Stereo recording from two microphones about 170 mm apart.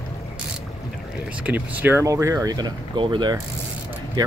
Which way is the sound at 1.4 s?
10° right (ahead or behind).